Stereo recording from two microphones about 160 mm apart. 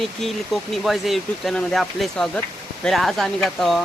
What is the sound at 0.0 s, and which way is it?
Speech, centre (ahead or behind).